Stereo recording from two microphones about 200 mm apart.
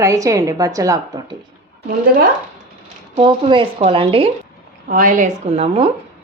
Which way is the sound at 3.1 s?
25° right (ahead or behind).